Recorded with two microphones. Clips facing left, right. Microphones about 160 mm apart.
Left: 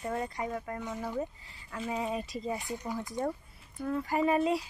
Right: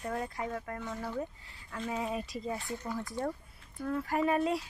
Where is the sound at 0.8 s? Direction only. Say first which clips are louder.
Left 3 dB; 15° left (ahead or behind).